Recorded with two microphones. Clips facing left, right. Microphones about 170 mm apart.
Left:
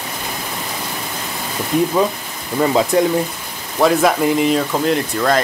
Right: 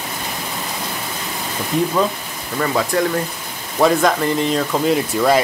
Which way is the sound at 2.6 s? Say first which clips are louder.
Left 4 dB; 20° left (ahead or behind).